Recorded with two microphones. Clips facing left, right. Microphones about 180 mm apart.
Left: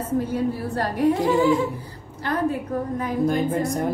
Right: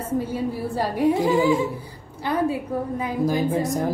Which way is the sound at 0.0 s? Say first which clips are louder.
Left 2 dB; 10° right (ahead or behind).